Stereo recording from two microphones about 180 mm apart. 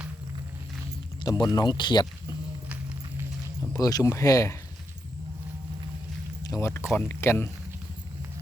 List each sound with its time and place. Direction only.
1.2 s speech: 25° left (ahead or behind)
3.7 s speech: 20° left (ahead or behind)
6.4 s speech: 15° left (ahead or behind)